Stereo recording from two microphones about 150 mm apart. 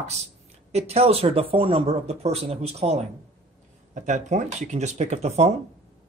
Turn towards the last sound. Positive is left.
turn(degrees=-45)  # may be behind; listen again after turning